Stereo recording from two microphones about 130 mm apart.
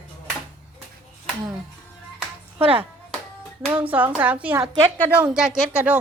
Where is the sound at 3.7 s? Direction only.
10° right (ahead or behind).